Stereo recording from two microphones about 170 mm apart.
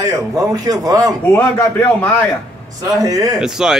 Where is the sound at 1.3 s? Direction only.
10° left (ahead or behind).